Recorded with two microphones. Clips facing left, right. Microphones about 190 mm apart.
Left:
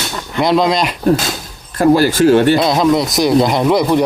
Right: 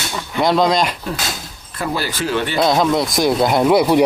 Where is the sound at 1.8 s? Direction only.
45° left (ahead or behind).